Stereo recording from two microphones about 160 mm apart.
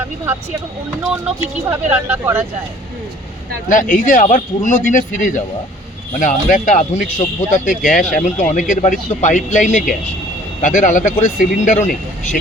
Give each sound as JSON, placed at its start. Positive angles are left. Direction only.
{"t": 1.4, "sound": "speech", "side_deg": -15}
{"t": 3.7, "sound": "speech", "side_deg": 55}